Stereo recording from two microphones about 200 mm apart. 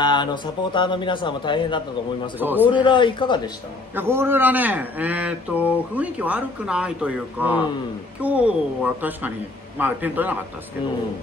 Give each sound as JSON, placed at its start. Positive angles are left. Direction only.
{"t": 0.0, "sound": "a man's voice", "side_deg": 20}
{"t": 2.3, "sound": "speech", "side_deg": -10}
{"t": 2.7, "sound": "a man's voice", "side_deg": 25}
{"t": 3.9, "sound": "speech", "side_deg": -10}